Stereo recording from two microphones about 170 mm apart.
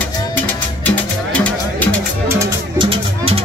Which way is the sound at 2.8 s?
30° right (ahead or behind).